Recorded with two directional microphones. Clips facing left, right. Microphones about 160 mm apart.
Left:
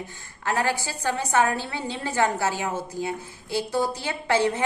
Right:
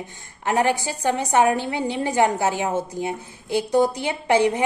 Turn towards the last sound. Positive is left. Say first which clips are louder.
# right 4 dB
turn(degrees=-15)  # may be behind; listen again after turning